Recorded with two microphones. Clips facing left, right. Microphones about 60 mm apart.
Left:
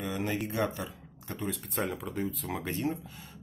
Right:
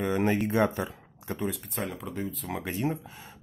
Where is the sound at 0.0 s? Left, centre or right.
Right.